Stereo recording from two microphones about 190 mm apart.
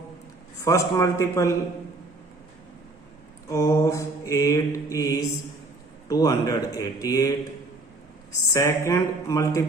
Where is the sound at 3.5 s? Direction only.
15° left (ahead or behind).